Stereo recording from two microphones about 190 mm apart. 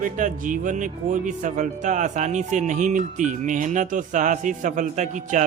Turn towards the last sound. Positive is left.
turn(degrees=-40)  # may be behind; listen again after turning